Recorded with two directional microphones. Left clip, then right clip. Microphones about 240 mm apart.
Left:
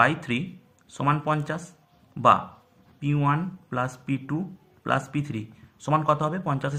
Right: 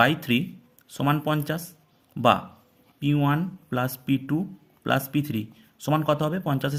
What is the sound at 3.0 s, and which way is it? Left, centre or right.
Speech, right.